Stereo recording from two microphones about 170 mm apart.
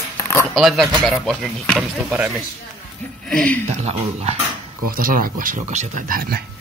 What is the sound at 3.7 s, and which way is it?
Speech, 40° right (ahead or behind).